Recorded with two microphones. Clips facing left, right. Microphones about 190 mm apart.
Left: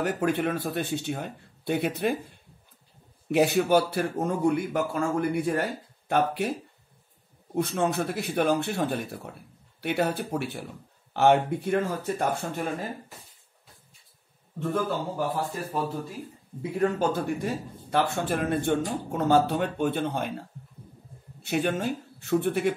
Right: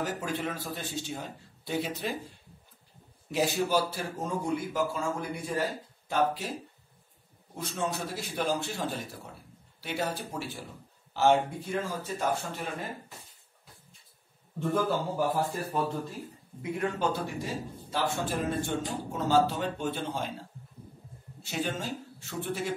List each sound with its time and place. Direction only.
0.0 s a man's voice: 60° left (ahead or behind)
3.3 s a man's voice: 60° left (ahead or behind)
7.5 s a man's voice: 60° left (ahead or behind)
14.6 s a man's voice: centre (ahead or behind)
16.7 s a man's voice: 45° left (ahead or behind)
21.5 s a man's voice: 60° left (ahead or behind)